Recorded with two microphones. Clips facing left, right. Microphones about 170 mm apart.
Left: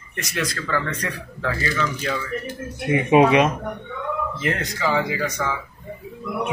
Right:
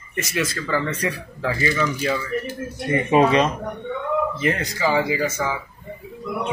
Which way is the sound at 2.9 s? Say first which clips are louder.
Left 2 dB; 10° left (ahead or behind).